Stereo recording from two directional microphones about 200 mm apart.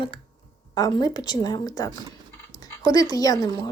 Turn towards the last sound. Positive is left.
turn(degrees=20)  # may be behind; listen again after turning